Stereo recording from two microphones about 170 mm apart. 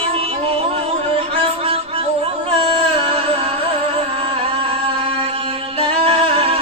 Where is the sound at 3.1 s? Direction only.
35° right (ahead or behind).